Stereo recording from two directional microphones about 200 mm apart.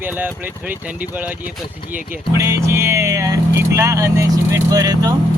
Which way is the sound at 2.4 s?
15° right (ahead or behind).